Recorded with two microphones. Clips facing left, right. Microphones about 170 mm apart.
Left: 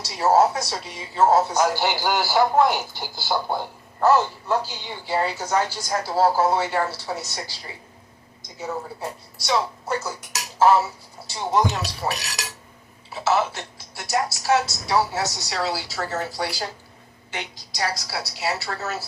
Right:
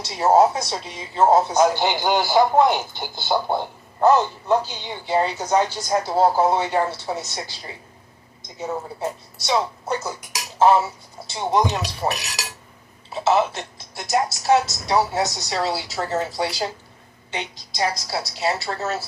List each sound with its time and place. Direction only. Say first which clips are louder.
0.0 s speech: right 2 dB; 20° right (ahead or behind)
9.5 s speech: right 1 dB; 20° right (ahead or behind)
12.0 s speech: right 3 dB; 35° right (ahead or behind)
13.2 s speech: right 3 dB; 20° right (ahead or behind)